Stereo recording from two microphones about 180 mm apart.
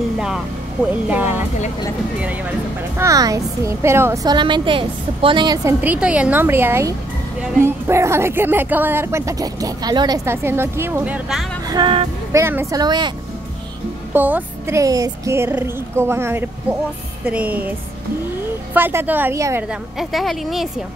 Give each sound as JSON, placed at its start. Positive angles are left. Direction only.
{"t": 1.0, "sound": "speech", "side_deg": -10}
{"t": 3.0, "sound": "a woman's voice", "side_deg": -20}
{"t": 5.8, "sound": "speech", "side_deg": -10}
{"t": 11.6, "sound": "a woman's voice", "side_deg": -25}
{"t": 12.3, "sound": "a woman's voice", "side_deg": -15}
{"t": 14.1, "sound": "speech", "side_deg": -10}
{"t": 19.7, "sound": "a woman's voice", "side_deg": 0}